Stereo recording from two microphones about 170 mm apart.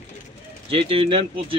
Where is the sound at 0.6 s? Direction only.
30° right (ahead or behind).